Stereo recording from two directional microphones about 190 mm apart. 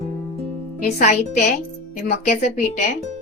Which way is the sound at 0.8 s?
35° left (ahead or behind).